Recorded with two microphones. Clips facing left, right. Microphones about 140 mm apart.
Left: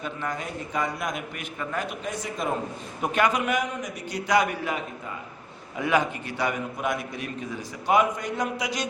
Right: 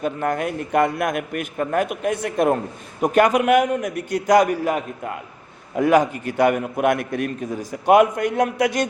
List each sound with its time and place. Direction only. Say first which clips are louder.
0.0 s a man's voice: right 9 dB; 50° right (ahead or behind)
3.0 s a man's voice: right 8 dB; 45° right (ahead or behind)